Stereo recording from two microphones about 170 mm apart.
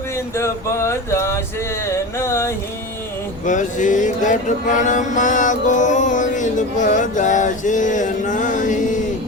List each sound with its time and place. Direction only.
0.3 s a sound: 15° left (ahead or behind)
2.1 s music: 15° left (ahead or behind)
3.4 s mantra: 45° left (ahead or behind)